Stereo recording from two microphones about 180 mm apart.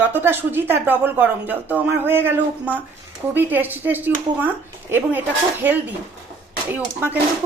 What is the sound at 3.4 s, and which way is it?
Speech, 10° right (ahead or behind).